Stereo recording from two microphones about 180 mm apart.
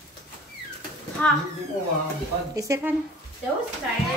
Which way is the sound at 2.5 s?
15° right (ahead or behind).